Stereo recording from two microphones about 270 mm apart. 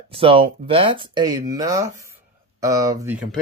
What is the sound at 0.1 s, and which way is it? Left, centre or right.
Speech, centre.